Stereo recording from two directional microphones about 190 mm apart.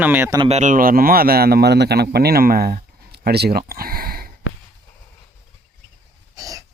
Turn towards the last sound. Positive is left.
turn(degrees=-20)  # may be behind; listen again after turning